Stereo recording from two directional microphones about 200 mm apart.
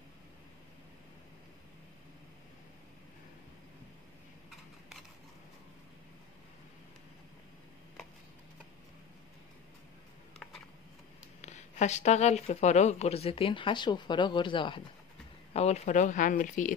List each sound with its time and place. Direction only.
11.4 s speech: 35° left (ahead or behind)